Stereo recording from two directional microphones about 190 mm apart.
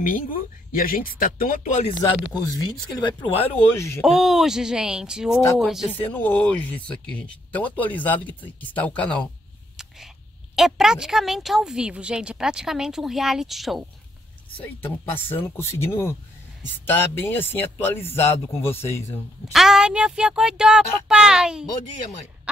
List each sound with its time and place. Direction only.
0.0 s speech: 45° left (ahead or behind)
2.3 s speech: 20° left (ahead or behind)
3.7 s speech: 15° left (ahead or behind)
4.0 s speech: centre (ahead or behind)
5.9 s speech: 10° left (ahead or behind)
14.6 s speech: 10° left (ahead or behind)
19.5 s speech: centre (ahead or behind)